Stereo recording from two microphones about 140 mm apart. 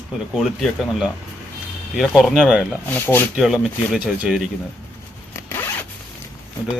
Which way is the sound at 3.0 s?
15° left (ahead or behind).